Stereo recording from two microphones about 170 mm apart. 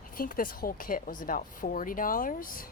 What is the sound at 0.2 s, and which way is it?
Speech, 55° left (ahead or behind).